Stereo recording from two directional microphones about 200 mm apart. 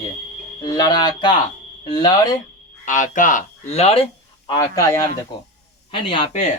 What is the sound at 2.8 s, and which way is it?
Speech, 40° left (ahead or behind).